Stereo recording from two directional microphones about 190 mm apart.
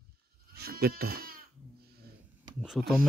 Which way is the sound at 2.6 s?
Centre (ahead or behind).